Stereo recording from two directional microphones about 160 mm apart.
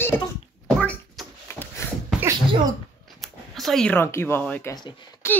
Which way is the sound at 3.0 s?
Centre (ahead or behind).